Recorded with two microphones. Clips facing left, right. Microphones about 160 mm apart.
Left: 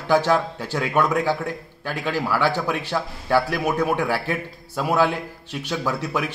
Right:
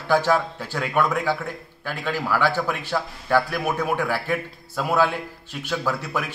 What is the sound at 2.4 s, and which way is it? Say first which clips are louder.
Speech: left 1 dB; 20° left (ahead or behind).